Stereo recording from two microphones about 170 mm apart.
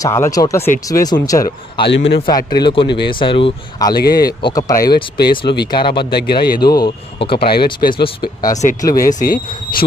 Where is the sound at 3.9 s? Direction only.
65° left (ahead or behind).